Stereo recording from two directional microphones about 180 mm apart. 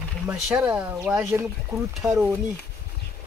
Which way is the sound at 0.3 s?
5° right (ahead or behind).